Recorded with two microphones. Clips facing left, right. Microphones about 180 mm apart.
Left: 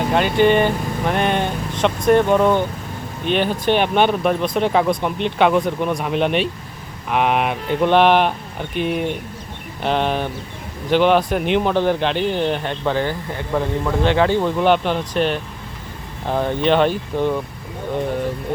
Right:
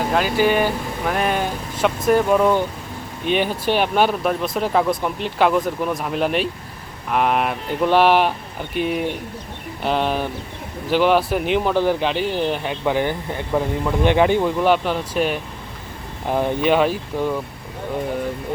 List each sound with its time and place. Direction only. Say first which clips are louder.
0.1 s speech: left 4 dB; 5° right (ahead or behind)
14.4 s speech: left 1 dB; 5° right (ahead or behind)